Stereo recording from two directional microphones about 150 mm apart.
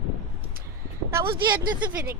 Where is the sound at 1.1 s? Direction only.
20° right (ahead or behind).